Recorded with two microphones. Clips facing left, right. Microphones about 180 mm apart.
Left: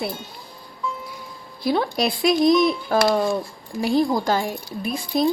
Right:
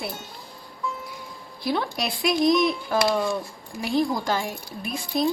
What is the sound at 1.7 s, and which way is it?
A woman's voice, 35° left (ahead or behind).